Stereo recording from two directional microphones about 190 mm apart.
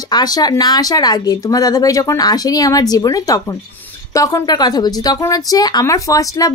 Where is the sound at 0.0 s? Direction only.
20° left (ahead or behind).